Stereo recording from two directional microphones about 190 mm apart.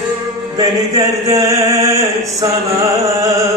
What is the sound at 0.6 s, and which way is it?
Chant, 20° right (ahead or behind).